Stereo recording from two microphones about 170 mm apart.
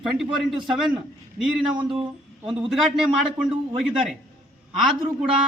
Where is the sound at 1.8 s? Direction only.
30° right (ahead or behind).